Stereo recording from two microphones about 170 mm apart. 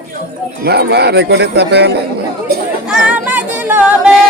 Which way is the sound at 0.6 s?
70° right (ahead or behind).